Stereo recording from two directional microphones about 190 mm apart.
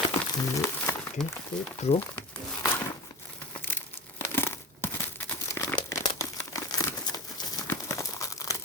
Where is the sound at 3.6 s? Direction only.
10° left (ahead or behind).